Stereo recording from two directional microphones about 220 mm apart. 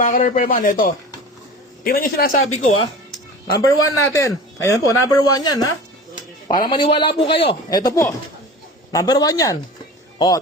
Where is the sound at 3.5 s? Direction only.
15° left (ahead or behind).